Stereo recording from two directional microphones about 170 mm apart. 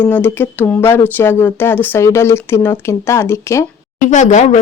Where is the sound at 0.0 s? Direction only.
10° left (ahead or behind).